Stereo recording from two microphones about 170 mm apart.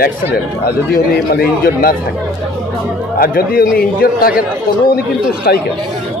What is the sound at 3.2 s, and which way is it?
Speech, 60° left (ahead or behind).